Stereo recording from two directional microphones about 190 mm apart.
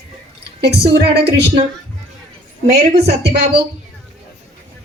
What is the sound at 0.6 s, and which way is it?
Speech, 60° right (ahead or behind).